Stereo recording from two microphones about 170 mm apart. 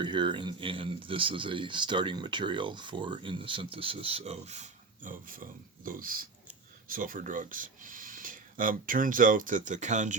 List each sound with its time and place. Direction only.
0.0 s speech: 30° right (ahead or behind); by 10.2 s 45° right (ahead or behind)